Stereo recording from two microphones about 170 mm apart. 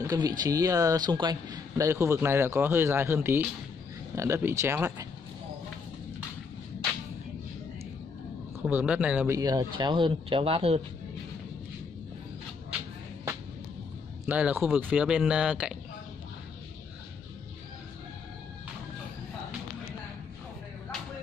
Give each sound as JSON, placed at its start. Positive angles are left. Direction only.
{"t": 0.0, "sound": "speech", "side_deg": -20}
{"t": 8.5, "sound": "speech", "side_deg": -10}
{"t": 9.3, "sound": "speech", "side_deg": -20}
{"t": 14.2, "sound": "speech", "side_deg": -10}